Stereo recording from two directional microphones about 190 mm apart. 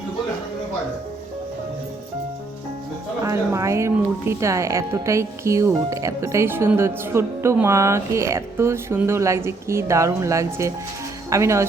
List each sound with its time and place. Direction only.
3.2 s speech: 15° right (ahead or behind)